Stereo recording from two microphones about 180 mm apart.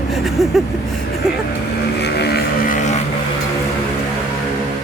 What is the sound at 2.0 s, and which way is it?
Vehicle, 65° left (ahead or behind).